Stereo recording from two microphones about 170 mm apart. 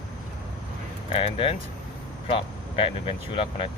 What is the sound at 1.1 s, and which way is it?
Speech, 30° left (ahead or behind).